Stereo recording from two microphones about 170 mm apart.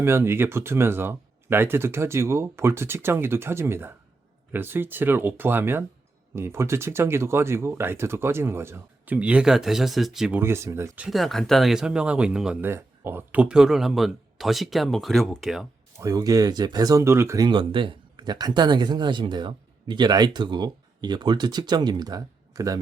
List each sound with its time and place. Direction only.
0.0 s speech: 15° right (ahead or behind)
16.0 s speech: 20° right (ahead or behind)